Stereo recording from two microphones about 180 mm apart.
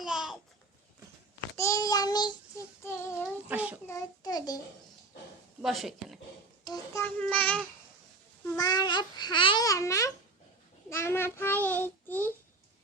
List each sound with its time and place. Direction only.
0.0 s babbling: centre (ahead or behind)
1.5 s speech: 15° left (ahead or behind)
2.8 s child singing: 15° left (ahead or behind)
3.5 s a child's voice: 10° right (ahead or behind)
3.8 s speech: 20° left (ahead or behind)
5.6 s speech: centre (ahead or behind)
6.7 s speech: 20° left (ahead or behind)
7.0 s child singing: 10° left (ahead or behind)
8.5 s speech: 20° left (ahead or behind)
10.8 s child singing: 15° left (ahead or behind)